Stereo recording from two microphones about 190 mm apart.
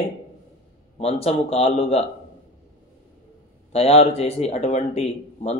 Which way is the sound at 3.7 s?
35° left (ahead or behind).